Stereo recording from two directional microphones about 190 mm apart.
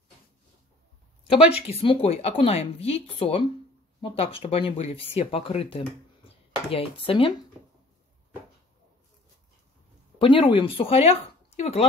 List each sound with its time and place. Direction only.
1.7 s speech: 30° left (ahead or behind)
10.1 s speech: 25° left (ahead or behind)